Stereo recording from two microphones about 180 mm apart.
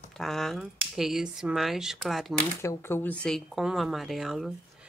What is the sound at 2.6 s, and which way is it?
A woman's voice, 15° left (ahead or behind).